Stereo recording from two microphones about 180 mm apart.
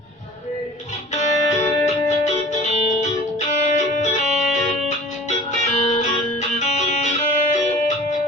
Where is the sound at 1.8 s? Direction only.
40° left (ahead or behind).